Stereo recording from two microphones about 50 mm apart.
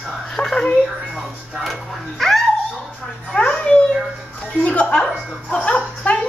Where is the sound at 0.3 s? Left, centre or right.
Centre.